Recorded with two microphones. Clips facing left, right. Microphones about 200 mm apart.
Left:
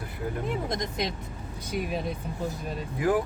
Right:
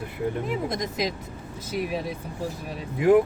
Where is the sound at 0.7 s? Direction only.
5° right (ahead or behind).